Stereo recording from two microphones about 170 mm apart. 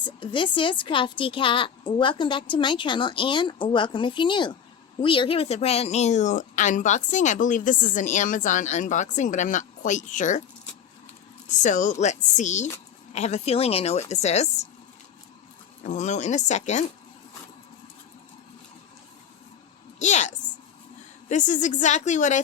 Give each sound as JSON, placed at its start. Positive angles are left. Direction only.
{"t": 0.0, "sound": "a woman's voice", "side_deg": 30}
{"t": 11.6, "sound": "speech", "side_deg": 45}
{"t": 15.8, "sound": "speech", "side_deg": 45}
{"t": 20.0, "sound": "speech", "side_deg": 45}